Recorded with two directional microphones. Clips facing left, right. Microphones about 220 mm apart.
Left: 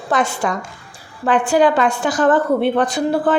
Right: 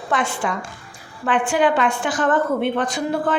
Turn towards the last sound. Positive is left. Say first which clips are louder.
# left 5 dB
turn(degrees=35)  # may be behind; listen again after turning